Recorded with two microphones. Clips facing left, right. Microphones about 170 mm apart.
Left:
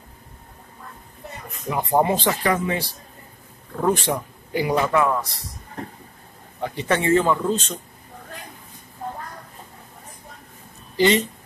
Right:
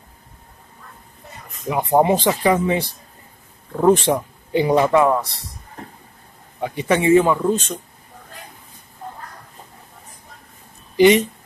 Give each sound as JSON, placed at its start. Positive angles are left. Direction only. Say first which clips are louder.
{"t": 1.7, "sound": "speech", "louder": "right 4 dB", "side_deg": -20}
{"t": 6.6, "sound": "a man's voice", "louder": "right 4 dB", "side_deg": -15}
{"t": 11.0, "sound": "speech", "louder": "right 6 dB", "side_deg": -15}